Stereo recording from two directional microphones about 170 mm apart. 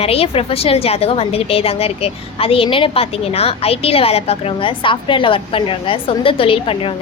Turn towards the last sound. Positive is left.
turn(degrees=30)  # may be behind; listen again after turning